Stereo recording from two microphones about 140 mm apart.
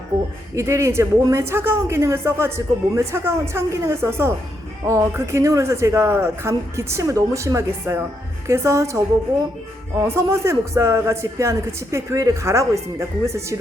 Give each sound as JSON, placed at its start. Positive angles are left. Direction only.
{"t": 0.5, "sound": "speech", "side_deg": -20}